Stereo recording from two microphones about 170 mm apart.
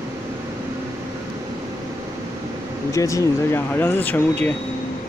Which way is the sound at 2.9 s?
20° left (ahead or behind).